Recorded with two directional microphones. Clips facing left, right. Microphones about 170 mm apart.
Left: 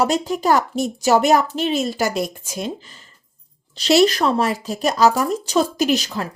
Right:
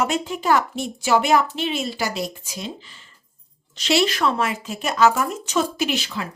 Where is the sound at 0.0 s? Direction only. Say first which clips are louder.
Left 4 dB; 40° left (ahead or behind).